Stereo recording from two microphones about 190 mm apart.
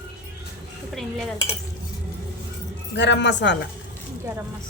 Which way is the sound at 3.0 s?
70° left (ahead or behind).